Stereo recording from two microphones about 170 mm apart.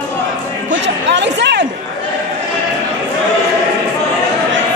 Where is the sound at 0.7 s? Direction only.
90° right.